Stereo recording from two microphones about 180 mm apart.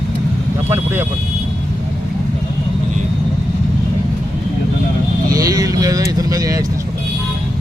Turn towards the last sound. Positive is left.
turn(degrees=-20)  # may be behind; listen again after turning